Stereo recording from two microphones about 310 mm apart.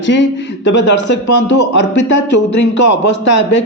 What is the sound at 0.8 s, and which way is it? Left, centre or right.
A man's voice, left.